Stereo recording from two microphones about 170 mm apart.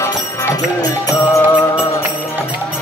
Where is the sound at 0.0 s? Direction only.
15° left (ahead or behind).